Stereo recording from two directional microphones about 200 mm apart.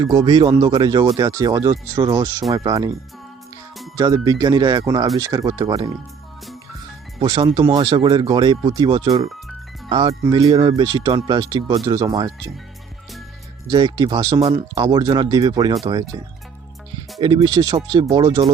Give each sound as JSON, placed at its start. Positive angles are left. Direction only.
{"t": 0.0, "sound": "speech", "side_deg": -25}
{"t": 7.2, "sound": "speech", "side_deg": -20}
{"t": 13.7, "sound": "speech", "side_deg": -20}
{"t": 17.2, "sound": "speech", "side_deg": -20}